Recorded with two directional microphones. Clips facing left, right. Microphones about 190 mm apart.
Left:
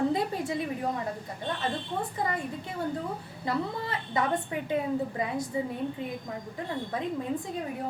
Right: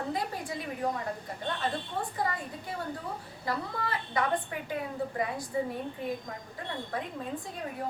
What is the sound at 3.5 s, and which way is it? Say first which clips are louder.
Speech: left 3 dB; 25° left (ahead or behind).